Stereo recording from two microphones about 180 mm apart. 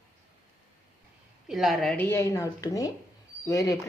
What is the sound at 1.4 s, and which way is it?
Speech, centre (ahead or behind).